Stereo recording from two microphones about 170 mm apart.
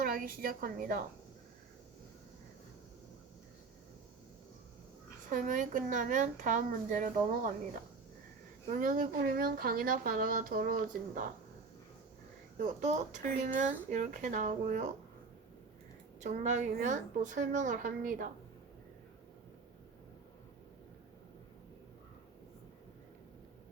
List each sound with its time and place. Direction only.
0.0 s a woman's voice: 55° right (ahead or behind)
5.3 s a woman's voice: 50° right (ahead or behind)
8.7 s speech: 50° right (ahead or behind)
12.5 s a woman's voice: 45° right (ahead or behind)
16.2 s a woman's voice: 45° right (ahead or behind)